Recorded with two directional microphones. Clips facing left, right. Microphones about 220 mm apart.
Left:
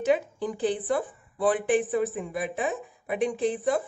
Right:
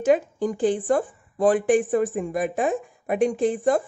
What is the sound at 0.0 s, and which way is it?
Speech, 45° right (ahead or behind).